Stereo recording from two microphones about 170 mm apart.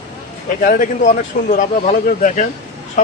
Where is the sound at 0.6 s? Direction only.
55° left (ahead or behind).